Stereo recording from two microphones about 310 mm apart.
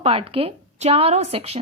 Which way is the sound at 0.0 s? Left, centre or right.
Centre.